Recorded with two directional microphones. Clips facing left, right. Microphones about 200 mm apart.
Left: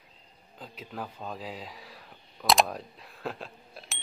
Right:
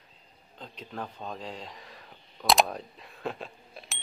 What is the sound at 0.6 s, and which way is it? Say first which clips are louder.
Speech: even; 5° left (ahead or behind).